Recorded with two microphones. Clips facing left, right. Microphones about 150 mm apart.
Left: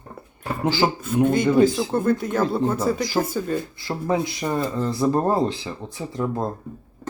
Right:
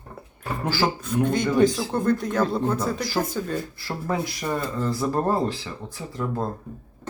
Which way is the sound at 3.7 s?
20° left (ahead or behind).